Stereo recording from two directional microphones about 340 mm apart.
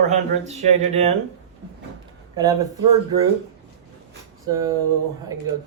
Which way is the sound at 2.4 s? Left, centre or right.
Centre.